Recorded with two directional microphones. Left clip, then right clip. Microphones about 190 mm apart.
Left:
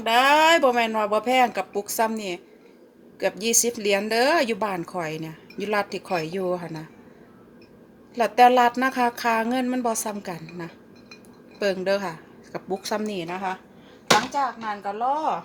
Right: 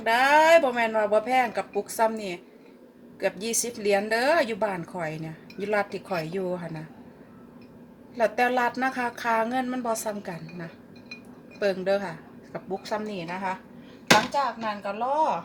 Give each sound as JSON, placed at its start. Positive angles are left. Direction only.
{"t": 0.0, "sound": "a woman's voice", "side_deg": 40}
{"t": 8.1, "sound": "a woman's voice", "side_deg": 40}
{"t": 12.5, "sound": "a woman's voice", "side_deg": 55}
{"t": 14.3, "sound": "a woman's voice", "side_deg": 35}